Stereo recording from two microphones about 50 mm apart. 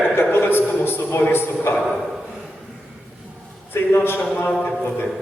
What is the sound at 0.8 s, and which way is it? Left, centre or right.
Speech, left.